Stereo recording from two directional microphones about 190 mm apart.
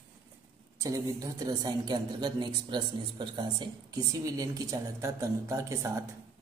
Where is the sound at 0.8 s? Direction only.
20° right (ahead or behind).